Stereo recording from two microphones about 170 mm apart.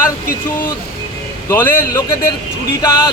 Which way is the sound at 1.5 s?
10° left (ahead or behind).